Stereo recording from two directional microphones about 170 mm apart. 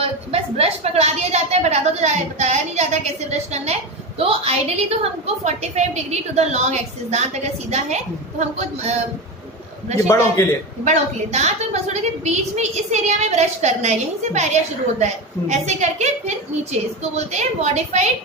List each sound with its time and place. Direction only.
0.0 s a woman's voice: 35° right (ahead or behind)
9.9 s a man's voice: 20° left (ahead or behind)
10.8 s a woman's voice: 40° right (ahead or behind)